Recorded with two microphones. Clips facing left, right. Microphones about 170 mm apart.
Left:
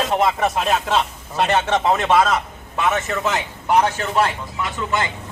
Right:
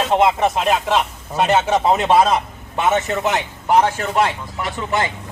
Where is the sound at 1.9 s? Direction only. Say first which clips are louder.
Right 2 dB; 25° right (ahead or behind).